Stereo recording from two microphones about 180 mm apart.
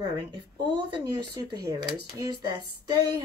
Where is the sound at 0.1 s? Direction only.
25° right (ahead or behind).